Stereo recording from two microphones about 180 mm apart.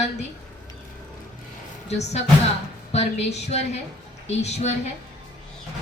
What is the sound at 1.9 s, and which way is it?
A woman's voice, 40° left (ahead or behind).